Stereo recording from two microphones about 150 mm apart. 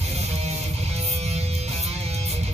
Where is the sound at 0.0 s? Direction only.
45° right (ahead or behind).